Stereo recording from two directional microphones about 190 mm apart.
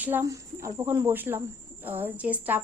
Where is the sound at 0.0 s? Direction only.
10° right (ahead or behind).